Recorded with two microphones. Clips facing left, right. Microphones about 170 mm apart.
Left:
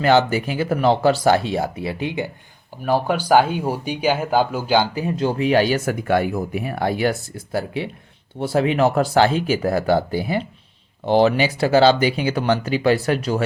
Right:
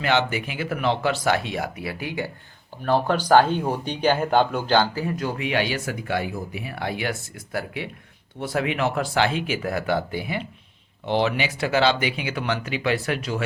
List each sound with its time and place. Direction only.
0.0 s speech: 40° left (ahead or behind); by 2.3 s 20° left (ahead or behind)
2.8 s speech: 10° left (ahead or behind); by 13.4 s 40° left (ahead or behind)